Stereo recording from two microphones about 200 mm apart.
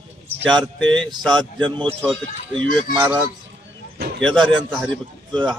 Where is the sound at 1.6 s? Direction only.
25° right (ahead or behind).